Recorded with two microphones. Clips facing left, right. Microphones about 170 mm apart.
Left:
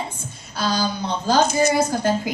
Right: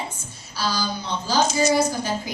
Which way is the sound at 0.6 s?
55° left (ahead or behind).